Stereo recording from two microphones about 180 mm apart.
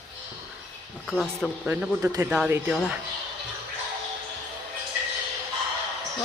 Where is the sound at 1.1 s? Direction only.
Centre (ahead or behind).